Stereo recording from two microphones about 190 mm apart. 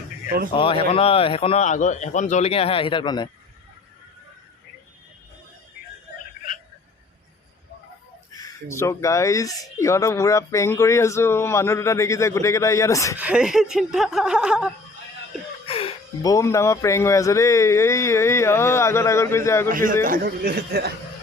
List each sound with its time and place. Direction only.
0.5 s speech: 30° left (ahead or behind)
8.3 s speech: 15° left (ahead or behind)
13.1 s a sound: 5° right (ahead or behind)
15.6 s music: 30° left (ahead or behind)
16.2 s speech: 15° left (ahead or behind)
19.7 s a man's voice: 45° right (ahead or behind)